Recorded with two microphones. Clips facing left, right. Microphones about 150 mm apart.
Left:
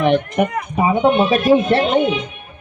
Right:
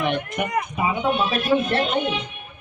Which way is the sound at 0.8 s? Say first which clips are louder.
Left 9 dB; 50° left (ahead or behind).